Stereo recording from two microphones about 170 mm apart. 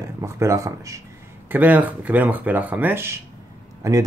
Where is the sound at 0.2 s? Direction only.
15° right (ahead or behind).